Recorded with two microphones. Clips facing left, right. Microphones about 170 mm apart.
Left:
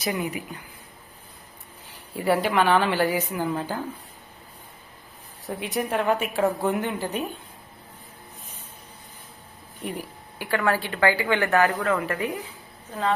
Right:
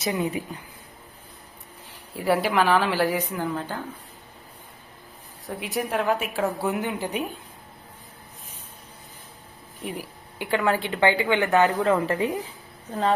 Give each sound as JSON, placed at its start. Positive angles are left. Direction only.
{"t": 0.0, "sound": "a woman's voice", "side_deg": -25}
{"t": 2.1, "sound": "a woman's voice", "side_deg": 0}
{"t": 5.5, "sound": "a woman's voice", "side_deg": 0}
{"t": 9.8, "sound": "a woman's voice", "side_deg": 0}
{"t": 10.3, "sound": "a woman's voice", "side_deg": -20}